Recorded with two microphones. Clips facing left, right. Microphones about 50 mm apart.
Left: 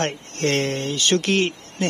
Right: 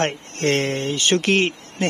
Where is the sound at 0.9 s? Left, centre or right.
Centre.